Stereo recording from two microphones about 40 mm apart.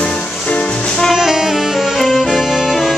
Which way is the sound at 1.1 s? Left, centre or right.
Centre.